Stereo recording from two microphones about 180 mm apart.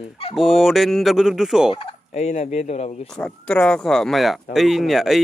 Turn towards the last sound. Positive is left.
turn(degrees=0)  # may be behind; listen again after turning